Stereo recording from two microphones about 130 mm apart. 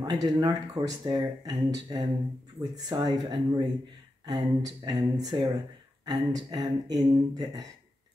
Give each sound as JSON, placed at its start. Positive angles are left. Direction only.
{"t": 0.0, "sound": "speech", "side_deg": -30}